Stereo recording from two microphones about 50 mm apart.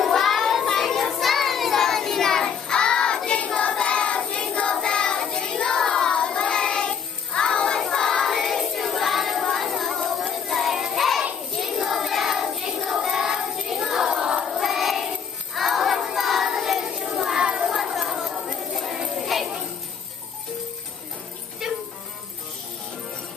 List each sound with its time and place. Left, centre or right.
0.1 s child singing: centre
8.3 s music: centre
11.5 s child singing: centre
15.5 s music: centre
17.0 s child singing: centre
17.6 s chatter: centre
19.1 s jingle bell: centre
21.6 s music: centre